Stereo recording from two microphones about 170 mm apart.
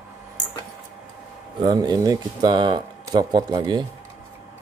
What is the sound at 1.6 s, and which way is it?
Speech, 25° right (ahead or behind).